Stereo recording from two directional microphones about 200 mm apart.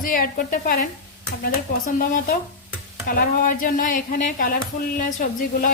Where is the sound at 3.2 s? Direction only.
45° left (ahead or behind).